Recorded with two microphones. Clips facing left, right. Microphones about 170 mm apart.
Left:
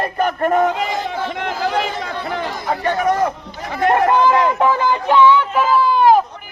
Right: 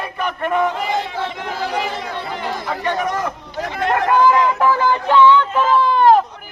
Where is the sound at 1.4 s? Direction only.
70° left (ahead or behind).